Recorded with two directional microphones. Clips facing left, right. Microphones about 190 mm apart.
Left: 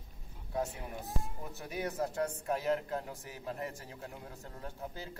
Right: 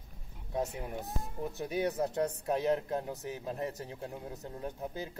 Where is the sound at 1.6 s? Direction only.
20° right (ahead or behind).